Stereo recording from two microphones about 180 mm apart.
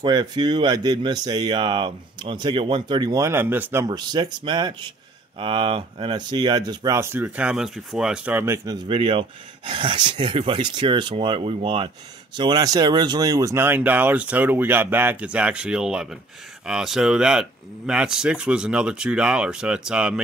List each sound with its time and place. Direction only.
0.0 s speech: 25° right (ahead or behind)
3.8 s speech: 20° right (ahead or behind)
8.6 s speech: 30° right (ahead or behind); by 20.2 s 5° right (ahead or behind)